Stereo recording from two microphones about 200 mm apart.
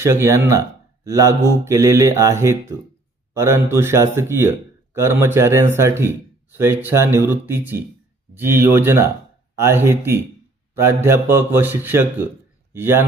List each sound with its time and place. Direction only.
0.0 s speech: 15° right (ahead or behind)